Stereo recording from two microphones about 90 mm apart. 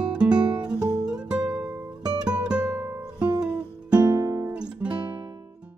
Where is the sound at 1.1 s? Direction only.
5° right (ahead or behind).